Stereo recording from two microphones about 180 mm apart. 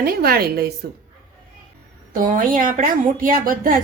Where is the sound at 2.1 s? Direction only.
50° right (ahead or behind).